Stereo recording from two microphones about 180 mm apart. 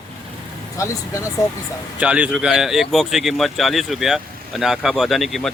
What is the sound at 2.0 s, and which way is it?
Speech, 5° right (ahead or behind).